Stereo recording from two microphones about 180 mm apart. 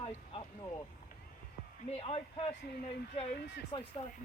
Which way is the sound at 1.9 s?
30° left (ahead or behind).